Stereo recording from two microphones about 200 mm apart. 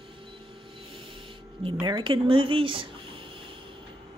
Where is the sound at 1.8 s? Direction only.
25° right (ahead or behind).